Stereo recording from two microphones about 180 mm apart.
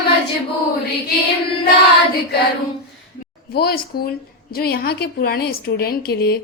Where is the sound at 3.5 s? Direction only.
60° left (ahead or behind).